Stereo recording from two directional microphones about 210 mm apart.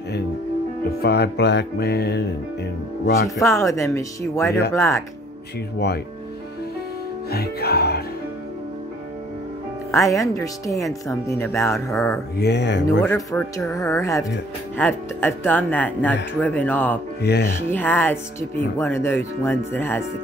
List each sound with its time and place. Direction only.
1.0 s music: 50° left (ahead or behind)
3.3 s speech: 15° left (ahead or behind)
7.2 s music: 50° left (ahead or behind)
9.8 s speech: 15° left (ahead or behind)
12.4 s speech: 55° left (ahead or behind)
13.0 s speech: 10° left (ahead or behind)
17.2 s music: 50° left (ahead or behind)
17.6 s speech: 10° left (ahead or behind)